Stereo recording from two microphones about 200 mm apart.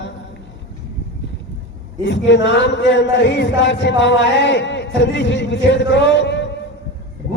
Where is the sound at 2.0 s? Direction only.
65° left (ahead or behind).